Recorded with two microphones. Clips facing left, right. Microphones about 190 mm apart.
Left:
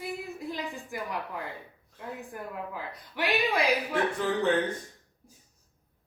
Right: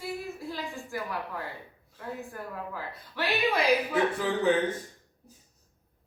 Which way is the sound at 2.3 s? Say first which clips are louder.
Even; 15° left (ahead or behind).